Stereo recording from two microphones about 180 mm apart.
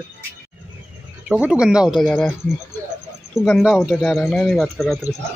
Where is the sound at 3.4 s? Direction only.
Centre (ahead or behind).